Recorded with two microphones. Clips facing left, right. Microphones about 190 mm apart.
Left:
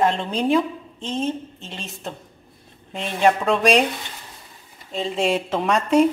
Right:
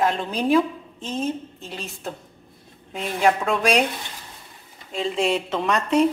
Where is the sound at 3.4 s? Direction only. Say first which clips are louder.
Left 3 dB; centre (ahead or behind).